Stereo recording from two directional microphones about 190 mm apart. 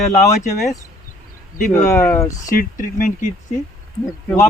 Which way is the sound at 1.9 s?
15° left (ahead or behind).